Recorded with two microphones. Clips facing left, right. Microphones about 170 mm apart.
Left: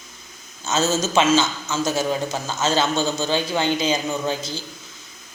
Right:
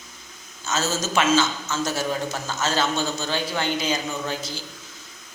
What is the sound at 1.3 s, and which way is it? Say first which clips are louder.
A man's voice: left 2 dB; 10° left (ahead or behind).